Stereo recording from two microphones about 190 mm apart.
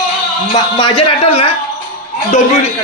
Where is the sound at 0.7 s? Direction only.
25° left (ahead or behind).